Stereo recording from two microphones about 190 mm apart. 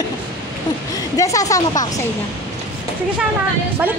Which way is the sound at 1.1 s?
15° left (ahead or behind).